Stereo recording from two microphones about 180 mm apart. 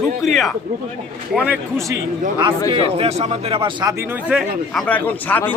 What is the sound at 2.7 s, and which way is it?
Speech, 35° right (ahead or behind).